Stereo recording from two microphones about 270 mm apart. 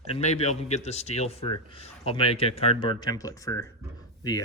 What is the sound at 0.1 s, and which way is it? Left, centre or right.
Speech, left.